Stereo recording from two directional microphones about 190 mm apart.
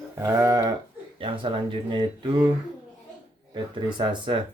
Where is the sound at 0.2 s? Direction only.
15° right (ahead or behind).